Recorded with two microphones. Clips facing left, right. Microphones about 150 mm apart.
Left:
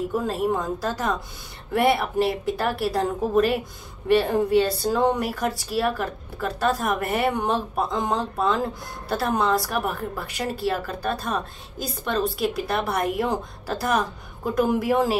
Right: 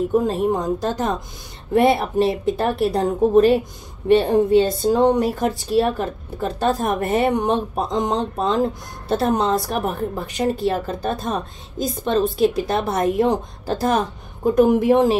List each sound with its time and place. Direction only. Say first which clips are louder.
0.1 s a woman's voice: right 5 dB; 20° right (ahead or behind)